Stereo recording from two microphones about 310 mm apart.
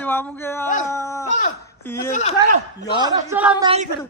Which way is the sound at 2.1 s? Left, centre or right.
Left.